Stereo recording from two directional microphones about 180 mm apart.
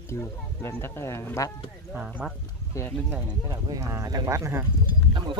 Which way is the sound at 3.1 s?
20° right (ahead or behind).